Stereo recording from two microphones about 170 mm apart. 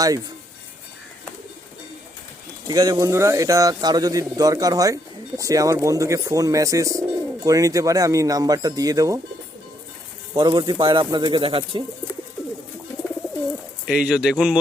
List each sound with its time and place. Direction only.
2.6 s speech: 20° right (ahead or behind)
10.3 s speech: 25° right (ahead or behind)
13.8 s speech: 5° right (ahead or behind)